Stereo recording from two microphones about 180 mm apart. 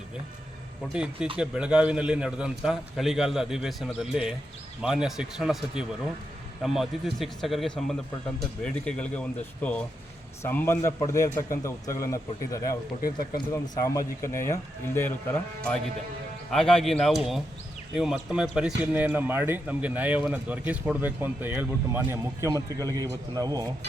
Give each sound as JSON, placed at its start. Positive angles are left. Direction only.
{"t": 0.9, "sound": "a man's voice", "side_deg": -5}
{"t": 13.0, "sound": "speech", "side_deg": 55}
{"t": 13.3, "sound": "a man's voice", "side_deg": 20}